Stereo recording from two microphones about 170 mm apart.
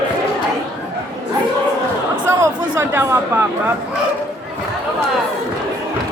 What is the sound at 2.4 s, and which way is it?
Chatter, 15° right (ahead or behind).